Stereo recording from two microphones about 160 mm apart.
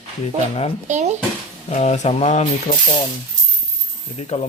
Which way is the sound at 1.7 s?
45° left (ahead or behind).